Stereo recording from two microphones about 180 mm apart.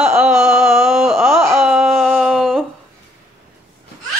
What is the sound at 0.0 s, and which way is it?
Wail, 5° right (ahead or behind).